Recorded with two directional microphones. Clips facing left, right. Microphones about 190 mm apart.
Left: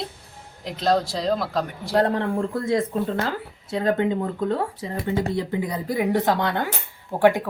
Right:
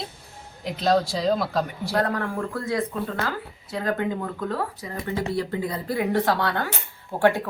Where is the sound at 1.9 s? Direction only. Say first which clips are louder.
Left 4 dB; 25° left (ahead or behind).